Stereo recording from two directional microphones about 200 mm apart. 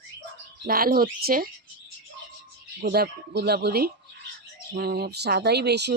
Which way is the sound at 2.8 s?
50° right (ahead or behind).